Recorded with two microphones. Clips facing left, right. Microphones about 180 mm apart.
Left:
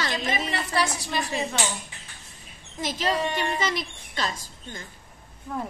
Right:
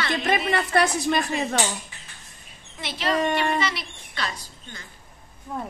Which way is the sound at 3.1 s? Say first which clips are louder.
Right 4 dB; 55° right (ahead or behind).